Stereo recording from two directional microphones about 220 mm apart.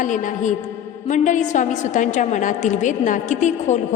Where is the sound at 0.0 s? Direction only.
35° left (ahead or behind).